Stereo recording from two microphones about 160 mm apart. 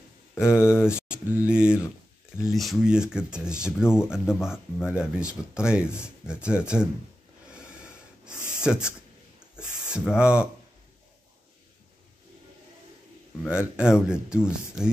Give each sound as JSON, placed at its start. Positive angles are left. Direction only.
{"t": 0.3, "sound": "speech", "side_deg": 15}
{"t": 0.8, "sound": "mantra", "side_deg": -5}
{"t": 1.3, "sound": "a sound", "side_deg": -5}
{"t": 2.4, "sound": "speech", "side_deg": 0}
{"t": 4.7, "sound": "speech", "side_deg": 15}
{"t": 5.2, "sound": "speech", "side_deg": -5}
{"t": 7.5, "sound": "snort", "side_deg": -5}
{"t": 8.6, "sound": "speech", "side_deg": -5}
{"t": 13.5, "sound": "speech", "side_deg": -5}